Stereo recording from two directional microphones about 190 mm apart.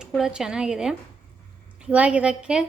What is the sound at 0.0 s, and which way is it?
Speech, 5° right (ahead or behind).